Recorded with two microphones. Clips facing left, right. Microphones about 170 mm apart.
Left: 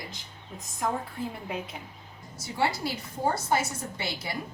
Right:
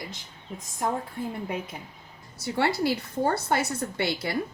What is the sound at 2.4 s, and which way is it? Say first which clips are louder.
A woman's voice: right 4 dB; 60° right (ahead or behind).